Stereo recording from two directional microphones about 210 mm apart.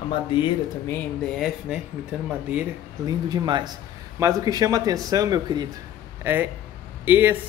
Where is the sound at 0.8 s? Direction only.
5° left (ahead or behind).